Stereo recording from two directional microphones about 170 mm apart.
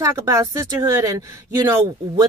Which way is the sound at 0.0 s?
15° right (ahead or behind).